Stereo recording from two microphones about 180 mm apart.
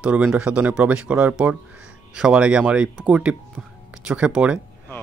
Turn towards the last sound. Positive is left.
turn(degrees=-5)  # may be behind; listen again after turning